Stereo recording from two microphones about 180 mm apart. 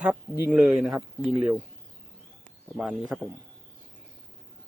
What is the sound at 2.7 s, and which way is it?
Speech, centre (ahead or behind).